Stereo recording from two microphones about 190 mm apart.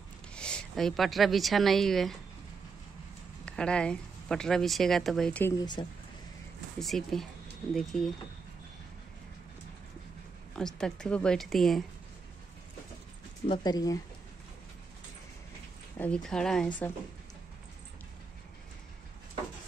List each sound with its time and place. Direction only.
0.4 s a woman's voice: 5° left (ahead or behind)
3.4 s a woman's voice: 5° left (ahead or behind)
5.6 s speech: 25° left (ahead or behind)
6.8 s a woman's voice: centre (ahead or behind)
10.5 s a woman's voice: 5° left (ahead or behind)
13.5 s speech: 20° left (ahead or behind)
16.0 s a woman's voice: 5° left (ahead or behind)